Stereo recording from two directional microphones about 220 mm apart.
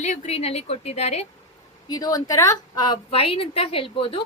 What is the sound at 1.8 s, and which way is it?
A woman's voice, 15° left (ahead or behind).